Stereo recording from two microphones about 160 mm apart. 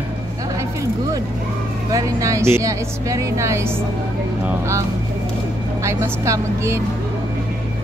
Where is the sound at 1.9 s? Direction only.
20° right (ahead or behind).